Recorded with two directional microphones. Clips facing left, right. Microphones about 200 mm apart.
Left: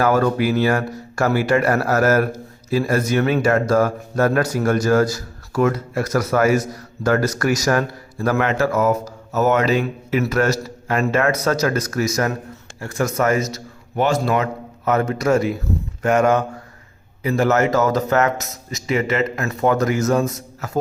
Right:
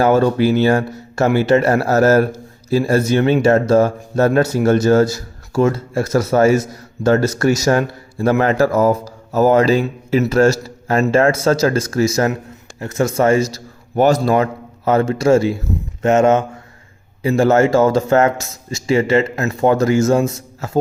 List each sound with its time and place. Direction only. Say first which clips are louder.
0.0 s a man's voice: right 4 dB; 30° right (ahead or behind)